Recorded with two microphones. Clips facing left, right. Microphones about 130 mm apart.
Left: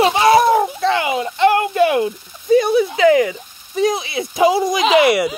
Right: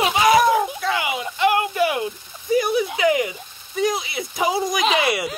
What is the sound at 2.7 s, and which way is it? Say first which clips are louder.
Speech: left 6 dB; 15° right (ahead or behind).